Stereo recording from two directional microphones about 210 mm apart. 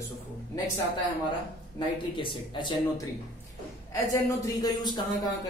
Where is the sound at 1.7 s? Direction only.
25° left (ahead or behind).